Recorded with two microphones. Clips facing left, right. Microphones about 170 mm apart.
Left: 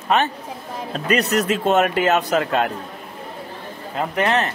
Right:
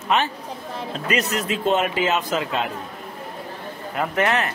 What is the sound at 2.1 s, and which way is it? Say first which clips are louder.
Speech: left 4 dB; 65° left (ahead or behind).